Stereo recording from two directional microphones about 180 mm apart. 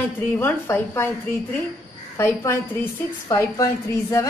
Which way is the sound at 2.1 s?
15° left (ahead or behind).